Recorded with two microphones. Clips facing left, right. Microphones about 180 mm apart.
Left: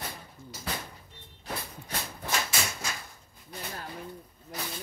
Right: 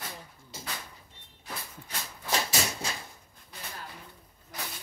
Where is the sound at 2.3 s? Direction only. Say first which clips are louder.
Right 2 dB; 30° right (ahead or behind).